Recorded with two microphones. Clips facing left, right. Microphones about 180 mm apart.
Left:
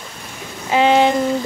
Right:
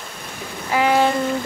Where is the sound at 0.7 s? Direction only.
20° left (ahead or behind).